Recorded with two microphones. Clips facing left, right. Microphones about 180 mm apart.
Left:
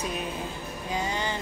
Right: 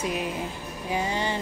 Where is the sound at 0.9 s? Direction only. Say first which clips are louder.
Right 3 dB; 25° right (ahead or behind).